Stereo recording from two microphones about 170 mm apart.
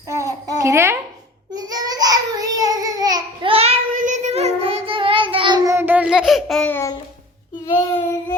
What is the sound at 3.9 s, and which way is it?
Child singing, 45° right (ahead or behind).